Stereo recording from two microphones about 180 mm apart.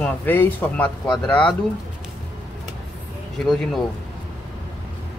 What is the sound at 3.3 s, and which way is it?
Speech, centre (ahead or behind).